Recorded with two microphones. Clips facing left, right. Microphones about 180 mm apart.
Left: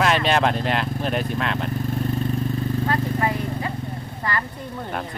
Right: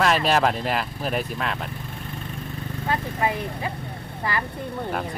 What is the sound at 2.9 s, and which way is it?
Horse, 15° right (ahead or behind).